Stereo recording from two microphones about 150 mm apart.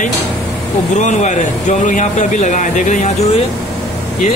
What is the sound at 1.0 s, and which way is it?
Speech, 55° left (ahead or behind).